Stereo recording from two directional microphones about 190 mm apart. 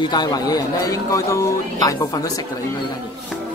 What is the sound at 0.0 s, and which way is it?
A man's voice, 20° left (ahead or behind).